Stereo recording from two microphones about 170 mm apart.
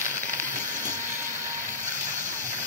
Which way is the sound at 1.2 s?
15° right (ahead or behind).